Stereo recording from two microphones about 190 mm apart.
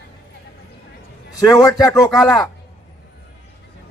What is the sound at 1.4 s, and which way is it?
A man's voice, 20° left (ahead or behind).